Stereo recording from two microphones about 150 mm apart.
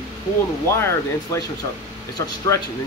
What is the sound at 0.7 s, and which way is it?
Speech, 15° left (ahead or behind).